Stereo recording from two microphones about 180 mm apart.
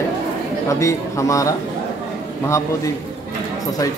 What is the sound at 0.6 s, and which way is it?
Speech, 15° left (ahead or behind).